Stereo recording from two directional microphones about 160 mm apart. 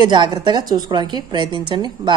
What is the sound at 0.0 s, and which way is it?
A man's voice, 25° right (ahead or behind).